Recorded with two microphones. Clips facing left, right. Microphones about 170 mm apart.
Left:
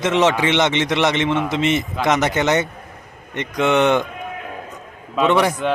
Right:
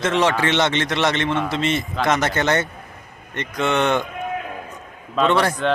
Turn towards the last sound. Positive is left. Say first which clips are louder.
# left 1 dB
turn(degrees=10)  # may be behind; listen again after turning